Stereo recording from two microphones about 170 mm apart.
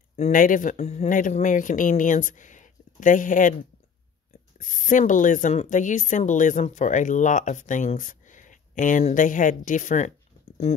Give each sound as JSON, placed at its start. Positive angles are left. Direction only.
{"t": 0.1, "sound": "speech", "side_deg": 50}
{"t": 4.6, "sound": "speech", "side_deg": 50}